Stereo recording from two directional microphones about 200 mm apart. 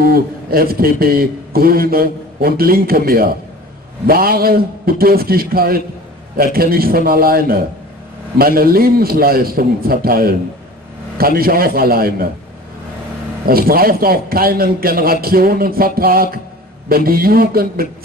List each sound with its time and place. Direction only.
0.0 s a man's voice: 50° right (ahead or behind)
13.5 s a man's voice: 50° right (ahead or behind)